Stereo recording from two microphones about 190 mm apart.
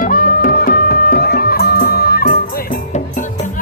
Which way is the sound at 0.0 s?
50° left (ahead or behind).